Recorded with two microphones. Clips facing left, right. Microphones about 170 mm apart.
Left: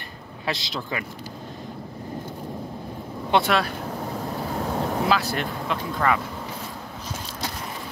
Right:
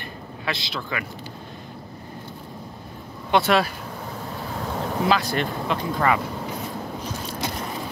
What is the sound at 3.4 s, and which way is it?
Speech, 5° right (ahead or behind).